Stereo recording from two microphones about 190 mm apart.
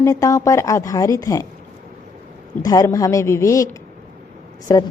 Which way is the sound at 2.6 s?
20° left (ahead or behind).